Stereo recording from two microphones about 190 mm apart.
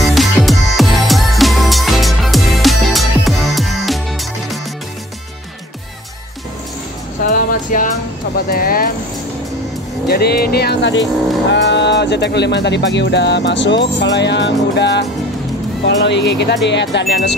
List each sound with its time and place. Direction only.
0.0 s music: centre (ahead or behind)
7.2 s music: 45° left (ahead or behind)
8.5 s speech: 50° left (ahead or behind)
10.0 s speech: 55° left (ahead or behind)